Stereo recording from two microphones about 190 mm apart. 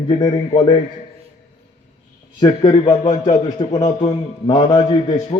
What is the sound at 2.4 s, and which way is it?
A man's voice, 25° left (ahead or behind).